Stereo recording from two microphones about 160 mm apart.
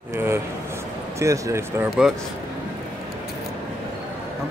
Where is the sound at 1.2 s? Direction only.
20° right (ahead or behind).